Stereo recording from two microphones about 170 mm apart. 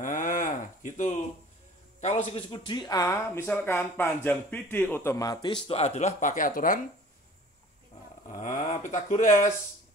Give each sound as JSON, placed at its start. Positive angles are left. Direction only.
{"t": 0.0, "sound": "a sound", "side_deg": 50}
{"t": 2.0, "sound": "speech", "side_deg": 35}
{"t": 8.3, "sound": "speech", "side_deg": 45}